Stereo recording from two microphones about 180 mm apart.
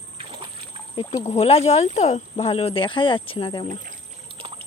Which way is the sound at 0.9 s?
35° left (ahead or behind).